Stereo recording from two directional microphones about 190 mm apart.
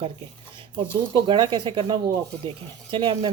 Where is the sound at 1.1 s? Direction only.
25° right (ahead or behind).